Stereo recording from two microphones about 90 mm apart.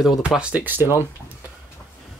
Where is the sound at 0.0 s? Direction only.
5° right (ahead or behind).